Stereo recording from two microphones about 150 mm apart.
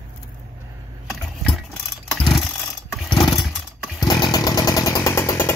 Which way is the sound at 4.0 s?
30° left (ahead or behind).